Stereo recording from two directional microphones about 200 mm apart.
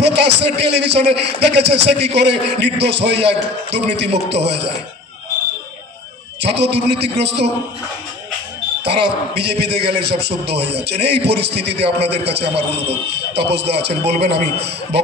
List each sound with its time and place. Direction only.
0.0 s a man's voice: 60° right (ahead or behind)
6.4 s a man's voice: 55° right (ahead or behind)
8.8 s a man's voice: 55° right (ahead or behind)
12.7 s a man's voice: 30° right (ahead or behind)
13.3 s a man's voice: 55° right (ahead or behind)